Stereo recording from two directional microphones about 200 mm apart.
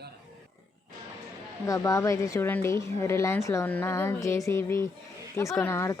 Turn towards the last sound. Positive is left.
turn(degrees=15)  # may be behind; listen again after turning